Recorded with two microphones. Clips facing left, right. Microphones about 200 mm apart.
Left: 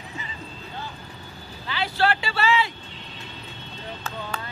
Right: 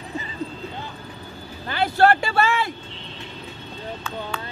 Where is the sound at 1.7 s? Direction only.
50° right (ahead or behind).